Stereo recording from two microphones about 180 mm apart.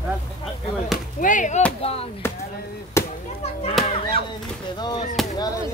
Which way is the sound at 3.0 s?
15° left (ahead or behind).